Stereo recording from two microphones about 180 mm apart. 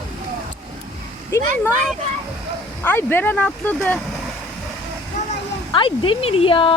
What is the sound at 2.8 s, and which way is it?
Speech, 10° left (ahead or behind).